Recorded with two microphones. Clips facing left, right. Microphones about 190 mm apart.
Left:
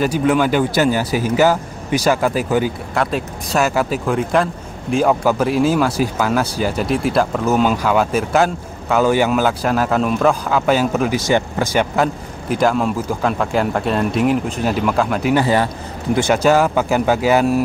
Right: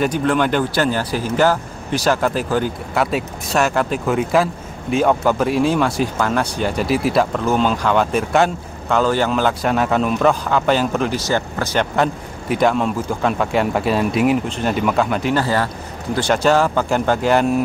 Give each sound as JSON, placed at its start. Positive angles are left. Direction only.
{"t": 0.0, "sound": "speech", "side_deg": 5}
{"t": 15.3, "sound": "a man's voice", "side_deg": 20}
{"t": 16.3, "sound": "speech", "side_deg": 5}